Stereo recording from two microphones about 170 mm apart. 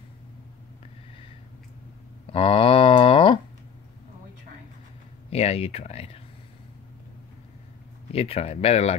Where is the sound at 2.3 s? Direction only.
35° left (ahead or behind).